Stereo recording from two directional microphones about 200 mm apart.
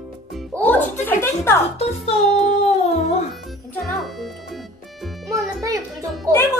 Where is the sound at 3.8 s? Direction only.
Centre (ahead or behind).